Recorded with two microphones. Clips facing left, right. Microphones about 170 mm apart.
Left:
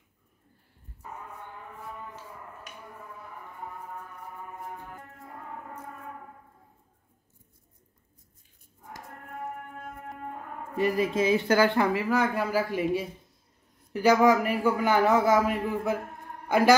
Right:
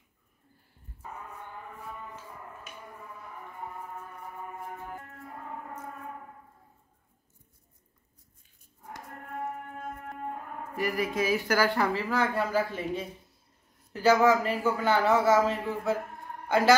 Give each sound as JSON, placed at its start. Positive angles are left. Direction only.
{"t": 10.8, "sound": "a man's voice", "side_deg": 25}